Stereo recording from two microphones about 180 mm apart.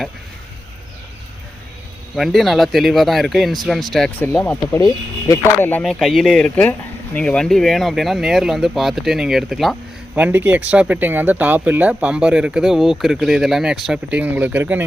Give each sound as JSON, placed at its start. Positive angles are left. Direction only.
{"t": 2.1, "sound": "speech", "side_deg": 0}
{"t": 4.3, "sound": "speech", "side_deg": 15}